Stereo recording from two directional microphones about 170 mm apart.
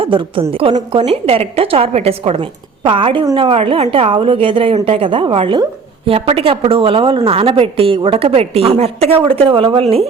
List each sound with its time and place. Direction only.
0.0 s a woman's voice: 30° right (ahead or behind)